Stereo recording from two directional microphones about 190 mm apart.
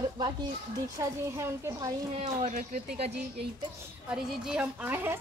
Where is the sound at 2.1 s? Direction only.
35° right (ahead or behind).